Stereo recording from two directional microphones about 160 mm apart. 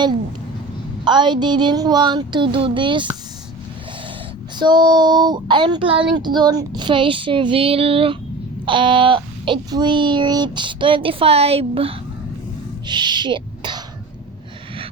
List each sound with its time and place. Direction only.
1.0 s child singing: 30° right (ahead or behind)
4.6 s child singing: 30° right (ahead or behind)
6.1 s a child's voice: 30° right (ahead or behind)